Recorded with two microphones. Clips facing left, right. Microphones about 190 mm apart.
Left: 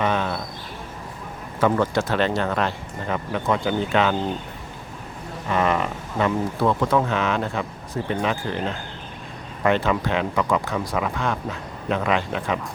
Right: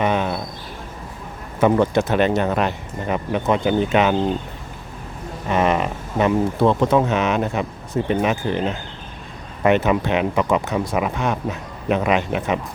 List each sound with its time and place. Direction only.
0.0 s a sound: 15° right (ahead or behind)
1.6 s speech: 20° right (ahead or behind)
5.5 s speech: 20° right (ahead or behind)